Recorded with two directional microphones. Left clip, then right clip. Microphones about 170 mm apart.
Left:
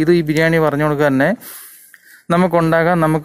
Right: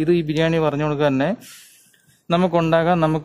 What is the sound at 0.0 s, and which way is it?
Speech, 20° left (ahead or behind).